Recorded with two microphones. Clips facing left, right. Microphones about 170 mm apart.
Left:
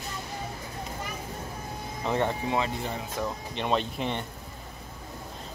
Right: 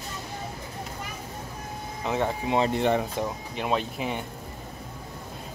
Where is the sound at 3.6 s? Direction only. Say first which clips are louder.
Even; 5° right (ahead or behind).